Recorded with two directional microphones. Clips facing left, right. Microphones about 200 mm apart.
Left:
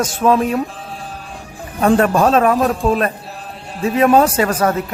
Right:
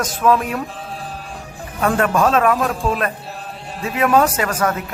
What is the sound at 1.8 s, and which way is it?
A man's voice, 30° left (ahead or behind).